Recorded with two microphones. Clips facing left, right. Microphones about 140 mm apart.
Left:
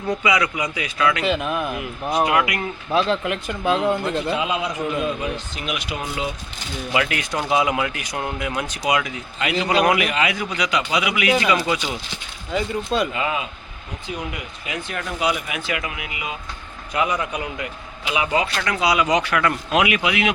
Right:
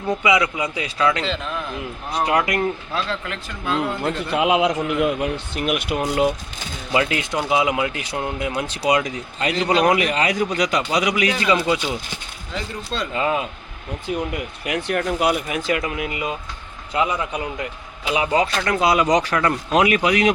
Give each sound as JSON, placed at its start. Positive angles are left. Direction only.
{"t": 0.2, "sound": "a man's voice", "side_deg": -25}
{"t": 1.2, "sound": "speech", "side_deg": 15}
{"t": 2.2, "sound": "a man's voice", "side_deg": -35}
{"t": 2.9, "sound": "speech", "side_deg": 20}
{"t": 4.4, "sound": "speech", "side_deg": -75}
{"t": 6.9, "sound": "a man's voice", "side_deg": -25}
{"t": 12.5, "sound": "speech", "side_deg": 15}
{"t": 13.1, "sound": "a man's voice", "side_deg": -40}
{"t": 14.6, "sound": "speech", "side_deg": -70}
{"t": 16.9, "sound": "a man's voice", "side_deg": -25}